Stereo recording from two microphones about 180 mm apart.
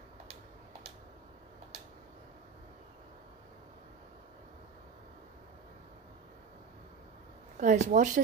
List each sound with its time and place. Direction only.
7.5 s speech: 45° right (ahead or behind)